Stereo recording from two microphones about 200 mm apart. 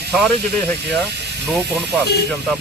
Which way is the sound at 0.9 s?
60° right (ahead or behind).